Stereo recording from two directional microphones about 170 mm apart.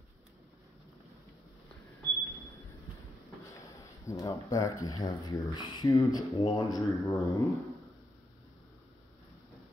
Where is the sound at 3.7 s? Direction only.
20° left (ahead or behind).